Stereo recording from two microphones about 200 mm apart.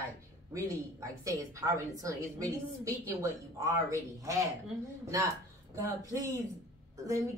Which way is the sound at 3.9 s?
15° right (ahead or behind).